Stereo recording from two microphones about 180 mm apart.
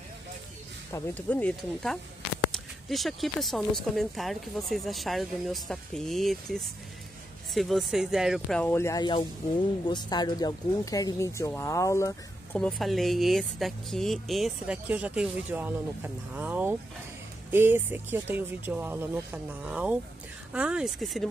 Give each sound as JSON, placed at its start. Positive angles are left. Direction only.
{"t": 0.9, "sound": "speech", "side_deg": 10}
{"t": 12.5, "sound": "speech", "side_deg": 0}